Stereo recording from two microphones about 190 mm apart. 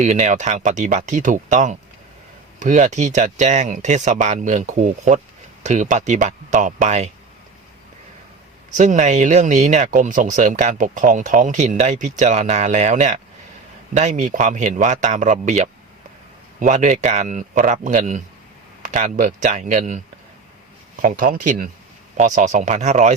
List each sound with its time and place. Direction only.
0.0 s speech: 40° right (ahead or behind)
8.7 s speech: 40° right (ahead or behind)
21.0 s speech: 45° right (ahead or behind)